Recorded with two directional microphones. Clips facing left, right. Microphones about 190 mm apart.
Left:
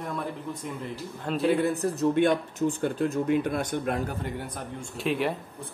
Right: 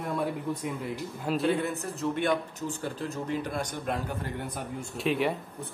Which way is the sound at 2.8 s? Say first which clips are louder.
Left 7 dB; 60° left (ahead or behind).